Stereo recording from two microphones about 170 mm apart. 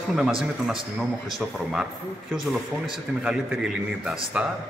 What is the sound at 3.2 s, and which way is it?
Speech, 5° right (ahead or behind).